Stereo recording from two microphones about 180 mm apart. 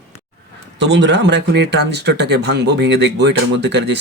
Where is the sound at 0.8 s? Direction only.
80° right.